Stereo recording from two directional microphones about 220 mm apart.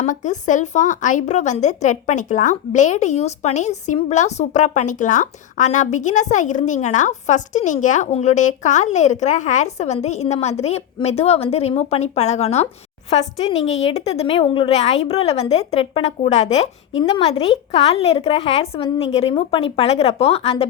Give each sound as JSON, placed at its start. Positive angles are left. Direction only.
{"t": 0.0, "sound": "a woman's voice", "side_deg": 35}